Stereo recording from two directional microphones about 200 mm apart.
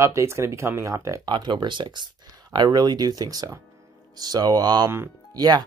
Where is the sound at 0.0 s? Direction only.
15° right (ahead or behind).